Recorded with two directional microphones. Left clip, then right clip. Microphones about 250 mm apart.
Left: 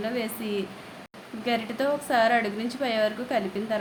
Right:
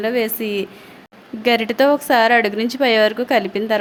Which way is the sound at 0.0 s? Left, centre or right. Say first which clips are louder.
Right 11 dB; right.